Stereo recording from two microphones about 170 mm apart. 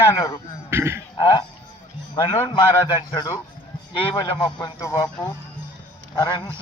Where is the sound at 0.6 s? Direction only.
15° right (ahead or behind).